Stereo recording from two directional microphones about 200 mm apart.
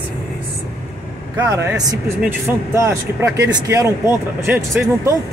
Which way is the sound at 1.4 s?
15° right (ahead or behind).